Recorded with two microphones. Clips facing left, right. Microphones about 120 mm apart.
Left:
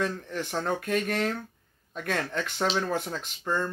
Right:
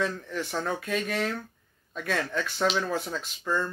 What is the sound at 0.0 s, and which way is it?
Speech, 50° left (ahead or behind).